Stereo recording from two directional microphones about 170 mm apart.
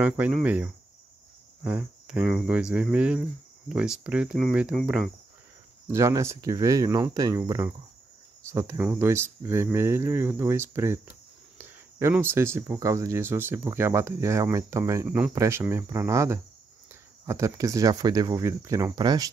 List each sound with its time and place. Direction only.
0.0 s speech: 5° right (ahead or behind)
5.9 s speech: 15° right (ahead or behind)
15.0 s speech: 5° right (ahead or behind); by 19.3 s 25° right (ahead or behind)